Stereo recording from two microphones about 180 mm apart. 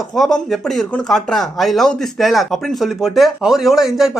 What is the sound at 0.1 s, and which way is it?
Speech, centre (ahead or behind).